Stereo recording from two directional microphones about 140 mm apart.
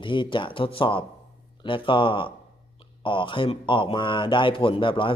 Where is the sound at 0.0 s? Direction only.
35° left (ahead or behind).